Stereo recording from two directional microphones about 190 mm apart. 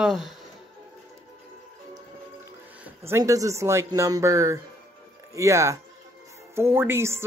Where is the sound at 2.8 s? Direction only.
15° right (ahead or behind).